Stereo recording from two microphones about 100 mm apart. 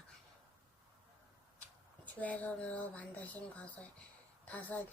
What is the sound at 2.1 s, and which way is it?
A woman's voice, 15° left (ahead or behind).